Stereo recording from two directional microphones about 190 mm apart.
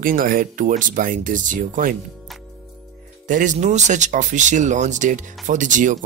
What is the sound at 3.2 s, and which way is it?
Speech, 40° right (ahead or behind).